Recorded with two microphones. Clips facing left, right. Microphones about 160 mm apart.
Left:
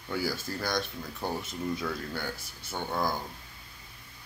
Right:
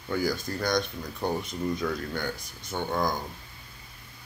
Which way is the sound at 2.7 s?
15° right (ahead or behind).